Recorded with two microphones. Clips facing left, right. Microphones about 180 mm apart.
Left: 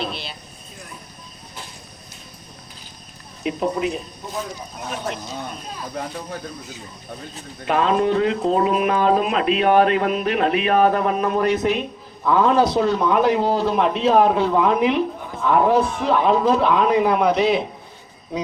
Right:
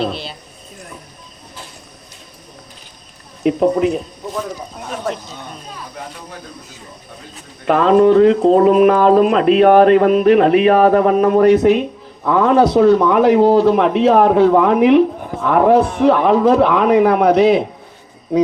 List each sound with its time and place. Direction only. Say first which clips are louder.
0.0 s speech: right 7 dB; 40° right (ahead or behind)
3.4 s speech: right 8 dB; 50° right (ahead or behind)
7.7 s a man's voice: right 8 dB; 45° right (ahead or behind)